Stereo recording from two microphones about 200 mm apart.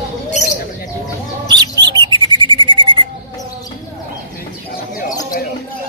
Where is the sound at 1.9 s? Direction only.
20° right (ahead or behind).